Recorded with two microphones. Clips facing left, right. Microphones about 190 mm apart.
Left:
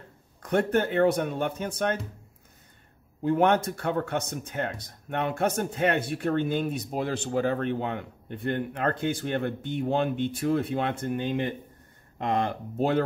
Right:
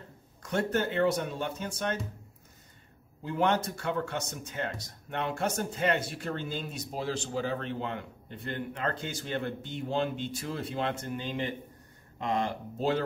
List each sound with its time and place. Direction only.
0.4 s speech: 60° left (ahead or behind)
3.3 s speech: 55° left (ahead or behind)